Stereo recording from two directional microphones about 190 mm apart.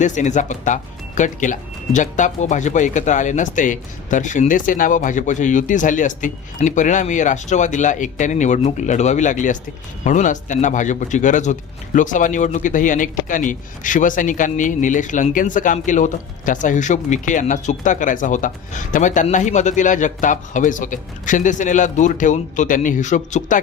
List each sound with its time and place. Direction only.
0.0 s speech: 40° left (ahead or behind)